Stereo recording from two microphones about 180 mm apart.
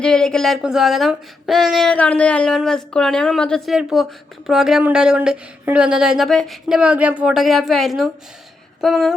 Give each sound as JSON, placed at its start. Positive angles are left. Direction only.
{"t": 0.0, "sound": "speech", "side_deg": 5}